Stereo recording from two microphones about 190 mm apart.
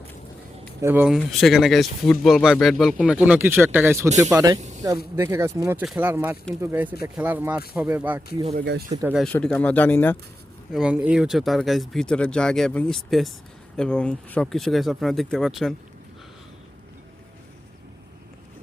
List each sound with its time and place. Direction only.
0.8 s speech: 10° right (ahead or behind)
8.5 s speech: 60° right (ahead or behind)
9.1 s speech: 5° left (ahead or behind)
10.7 s speech: 5° right (ahead or behind)